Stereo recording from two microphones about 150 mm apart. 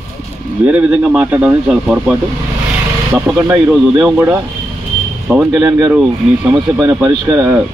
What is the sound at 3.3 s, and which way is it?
Speech, 10° right (ahead or behind).